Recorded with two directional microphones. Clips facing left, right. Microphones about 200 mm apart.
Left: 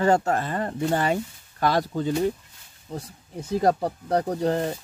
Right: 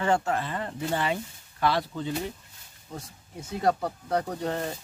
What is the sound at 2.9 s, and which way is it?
Speech, 35° left (ahead or behind).